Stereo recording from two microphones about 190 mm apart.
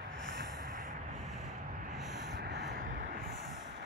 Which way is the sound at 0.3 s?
55° right (ahead or behind).